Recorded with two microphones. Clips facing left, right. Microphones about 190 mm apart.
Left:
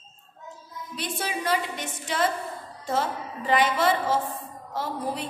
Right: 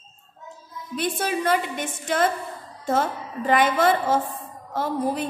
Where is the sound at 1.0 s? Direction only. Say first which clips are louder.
Right 6 dB; 50° right (ahead or behind).